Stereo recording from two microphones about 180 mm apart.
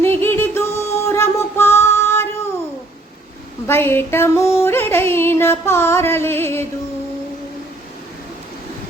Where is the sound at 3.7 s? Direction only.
15° left (ahead or behind).